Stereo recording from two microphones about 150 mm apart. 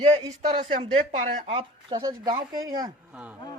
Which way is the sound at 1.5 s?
40° right (ahead or behind).